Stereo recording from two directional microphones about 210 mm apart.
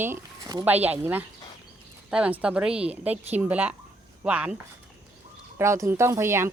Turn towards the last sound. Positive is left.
turn(degrees=-10)  # may be behind; listen again after turning